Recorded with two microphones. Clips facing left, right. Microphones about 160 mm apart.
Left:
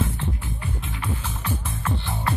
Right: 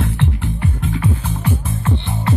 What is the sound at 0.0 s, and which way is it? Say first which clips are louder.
Music: right 7 dB; 70° right (ahead or behind).